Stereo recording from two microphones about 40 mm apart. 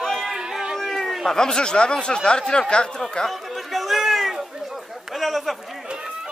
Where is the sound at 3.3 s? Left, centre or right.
Centre.